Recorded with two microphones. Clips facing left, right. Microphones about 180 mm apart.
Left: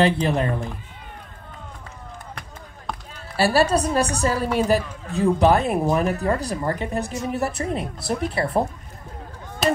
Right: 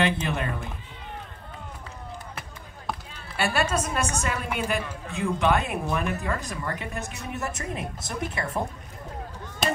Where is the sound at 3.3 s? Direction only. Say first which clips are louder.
Left 7 dB; 35° left (ahead or behind).